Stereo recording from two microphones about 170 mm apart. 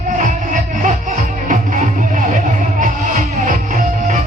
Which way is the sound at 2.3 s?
50° right (ahead or behind).